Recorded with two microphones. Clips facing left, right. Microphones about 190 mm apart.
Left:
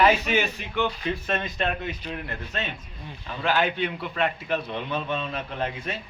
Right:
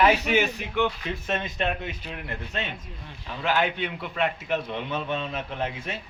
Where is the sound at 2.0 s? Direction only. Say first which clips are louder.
Left 2 dB; 10° right (ahead or behind).